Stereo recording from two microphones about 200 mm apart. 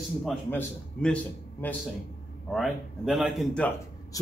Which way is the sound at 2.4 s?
Centre (ahead or behind).